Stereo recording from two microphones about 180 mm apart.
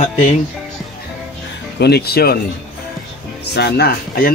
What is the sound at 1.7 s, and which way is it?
Speech, 65° left (ahead or behind).